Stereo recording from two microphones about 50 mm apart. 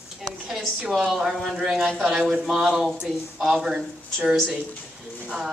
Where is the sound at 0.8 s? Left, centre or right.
Centre.